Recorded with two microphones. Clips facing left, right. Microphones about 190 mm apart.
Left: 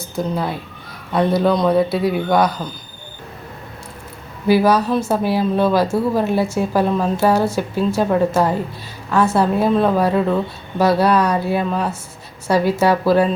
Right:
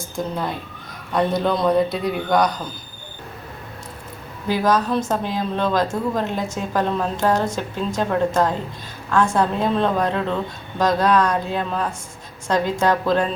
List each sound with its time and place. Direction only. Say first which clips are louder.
0.2 s a man's voice: left 4 dB; 5° left (ahead or behind)
4.4 s a woman's voice: left 5 dB; 10° left (ahead or behind)